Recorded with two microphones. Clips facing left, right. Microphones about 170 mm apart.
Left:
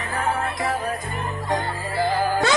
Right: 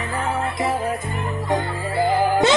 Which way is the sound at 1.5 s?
20° right (ahead or behind).